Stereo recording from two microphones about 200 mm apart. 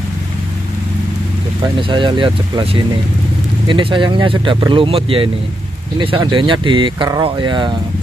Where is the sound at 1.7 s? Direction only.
25° right (ahead or behind).